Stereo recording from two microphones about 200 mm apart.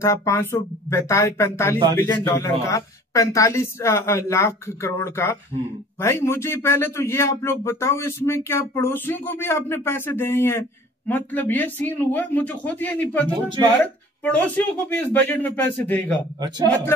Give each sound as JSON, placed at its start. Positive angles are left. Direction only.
{"t": 0.0, "sound": "a man's voice", "side_deg": 15}
{"t": 16.3, "sound": "speech", "side_deg": -20}